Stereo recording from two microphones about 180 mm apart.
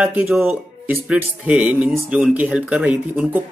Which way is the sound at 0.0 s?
5° right (ahead or behind).